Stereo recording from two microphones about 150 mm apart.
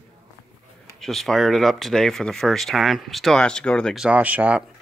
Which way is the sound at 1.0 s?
Centre (ahead or behind).